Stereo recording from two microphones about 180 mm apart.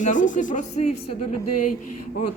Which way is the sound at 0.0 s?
45° left (ahead or behind).